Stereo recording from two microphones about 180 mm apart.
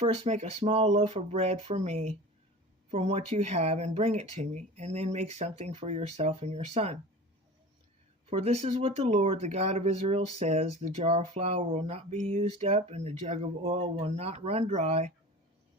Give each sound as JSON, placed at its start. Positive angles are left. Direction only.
{"t": 0.0, "sound": "speech", "side_deg": -40}
{"t": 8.3, "sound": "speech", "side_deg": -35}